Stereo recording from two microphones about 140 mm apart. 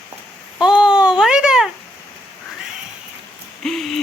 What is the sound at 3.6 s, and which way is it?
Owl, 5° left (ahead or behind).